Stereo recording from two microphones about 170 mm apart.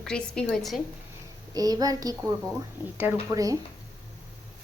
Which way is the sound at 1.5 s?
20° right (ahead or behind).